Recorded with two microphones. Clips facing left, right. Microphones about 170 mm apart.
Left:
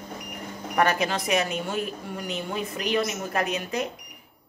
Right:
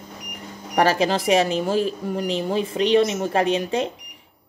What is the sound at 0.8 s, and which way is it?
Speech, 30° right (ahead or behind).